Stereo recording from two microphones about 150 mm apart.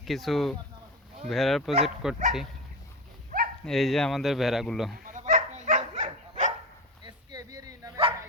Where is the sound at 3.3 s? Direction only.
65° right (ahead or behind).